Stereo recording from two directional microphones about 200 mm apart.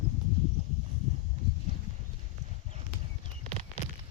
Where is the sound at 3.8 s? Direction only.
35° left (ahead or behind).